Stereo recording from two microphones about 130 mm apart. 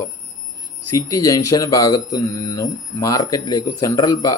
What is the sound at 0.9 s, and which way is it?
Speech, 25° left (ahead or behind).